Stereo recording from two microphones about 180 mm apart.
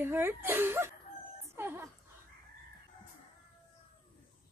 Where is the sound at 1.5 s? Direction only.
15° right (ahead or behind).